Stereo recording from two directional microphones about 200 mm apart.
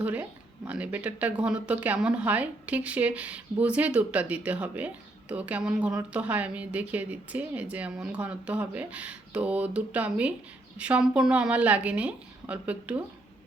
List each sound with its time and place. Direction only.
0.0 s speech: 10° right (ahead or behind)